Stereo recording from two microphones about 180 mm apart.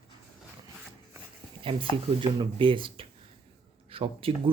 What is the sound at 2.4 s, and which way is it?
Speech, 30° right (ahead or behind).